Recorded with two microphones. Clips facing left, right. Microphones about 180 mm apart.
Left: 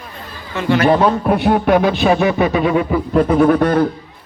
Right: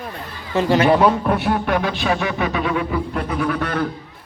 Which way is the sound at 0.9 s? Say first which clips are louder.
Left 1 dB; 10° right (ahead or behind).